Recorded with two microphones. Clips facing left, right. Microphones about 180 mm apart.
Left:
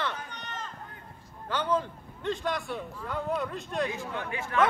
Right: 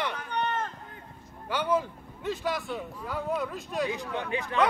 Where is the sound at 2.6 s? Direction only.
15° right (ahead or behind).